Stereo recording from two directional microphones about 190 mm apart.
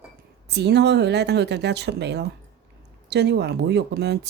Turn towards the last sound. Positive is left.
turn(degrees=-60)  # may be behind; listen again after turning